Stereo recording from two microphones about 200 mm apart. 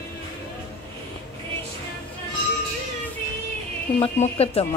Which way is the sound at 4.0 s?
30° left (ahead or behind).